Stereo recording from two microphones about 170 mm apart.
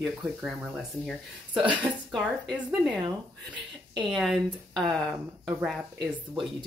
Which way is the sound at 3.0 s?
25° right (ahead or behind).